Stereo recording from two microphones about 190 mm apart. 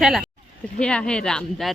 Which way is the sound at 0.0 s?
Centre (ahead or behind).